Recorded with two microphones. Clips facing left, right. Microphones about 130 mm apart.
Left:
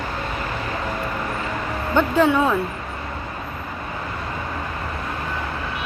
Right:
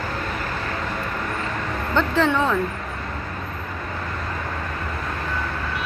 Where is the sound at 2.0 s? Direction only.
10° left (ahead or behind).